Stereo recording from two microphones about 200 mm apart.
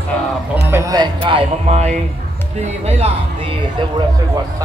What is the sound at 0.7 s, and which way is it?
Speech, 15° right (ahead or behind).